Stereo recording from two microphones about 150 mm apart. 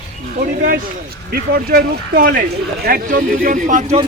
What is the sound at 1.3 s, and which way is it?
Speech, 90° right.